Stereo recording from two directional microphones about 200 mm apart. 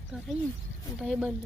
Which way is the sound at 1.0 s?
5° right (ahead or behind).